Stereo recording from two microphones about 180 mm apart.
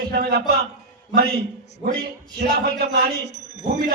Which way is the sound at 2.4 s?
55° right (ahead or behind).